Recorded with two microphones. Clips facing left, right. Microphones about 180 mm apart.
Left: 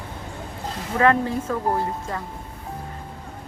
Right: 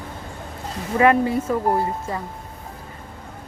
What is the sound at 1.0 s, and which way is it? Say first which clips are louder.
Speech: right 2 dB; 10° right (ahead or behind).